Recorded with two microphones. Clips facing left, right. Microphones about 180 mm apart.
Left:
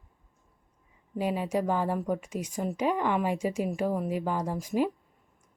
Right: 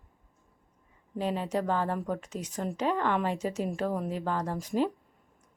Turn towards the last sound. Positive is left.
turn(degrees=10)  # may be behind; listen again after turning